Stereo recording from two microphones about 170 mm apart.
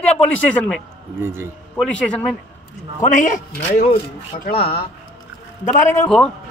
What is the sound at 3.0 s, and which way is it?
Speech, 50° left (ahead or behind).